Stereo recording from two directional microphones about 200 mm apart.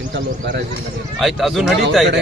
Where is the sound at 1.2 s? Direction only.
Centre (ahead or behind).